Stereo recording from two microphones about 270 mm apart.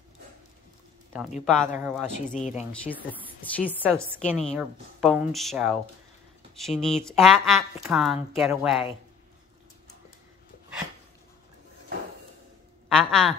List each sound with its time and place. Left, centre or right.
1.4 s a woman's voice: centre
2.3 s speech: left
2.7 s a woman's voice: centre
12.8 s speech: centre